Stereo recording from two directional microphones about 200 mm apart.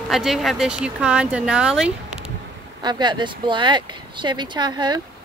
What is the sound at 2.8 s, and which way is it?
Speech, 20° right (ahead or behind).